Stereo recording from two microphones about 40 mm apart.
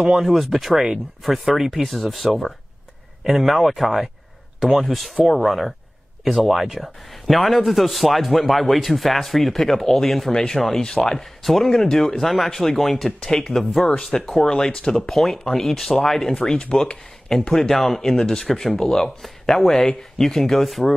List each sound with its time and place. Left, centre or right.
0.2 s speech: centre
3.3 s speech: centre
13.9 s speech: centre
16.3 s speech: centre
17.5 s speech: centre
18.1 s speech: centre